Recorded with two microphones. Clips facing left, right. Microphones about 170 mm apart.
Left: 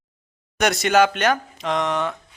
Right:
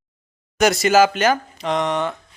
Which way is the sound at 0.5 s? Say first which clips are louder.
Right 3 dB; centre (ahead or behind).